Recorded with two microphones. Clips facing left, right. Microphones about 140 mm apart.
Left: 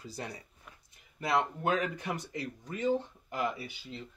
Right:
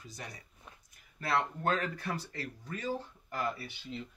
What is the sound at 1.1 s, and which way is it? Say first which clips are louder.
Speech: left 2 dB; 20° left (ahead or behind).